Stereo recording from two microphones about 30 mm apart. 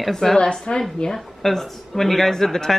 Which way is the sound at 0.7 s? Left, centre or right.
Left.